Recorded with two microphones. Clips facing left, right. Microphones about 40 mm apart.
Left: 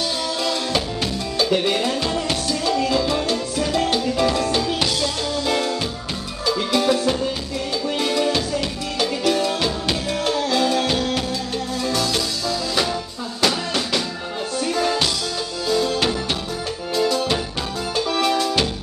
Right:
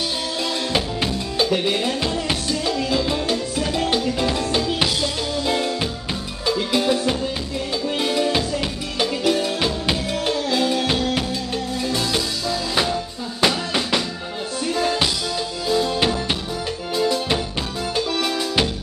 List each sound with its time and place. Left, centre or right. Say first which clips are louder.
0.4 s music: right 1 dB; centre
1.5 s music: left 3 dB; centre
2.2 s music: left 1 dB; centre
6.7 s music: left 2 dB; centre
11.9 s music: left 1 dB; centre
14.7 s music: even; centre
15.6 s music: even; centre